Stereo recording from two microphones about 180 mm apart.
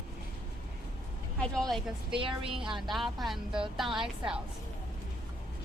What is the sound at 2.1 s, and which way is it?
Speech, 30° right (ahead or behind).